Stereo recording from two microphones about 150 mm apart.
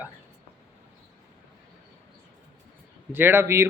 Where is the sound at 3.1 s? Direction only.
15° right (ahead or behind).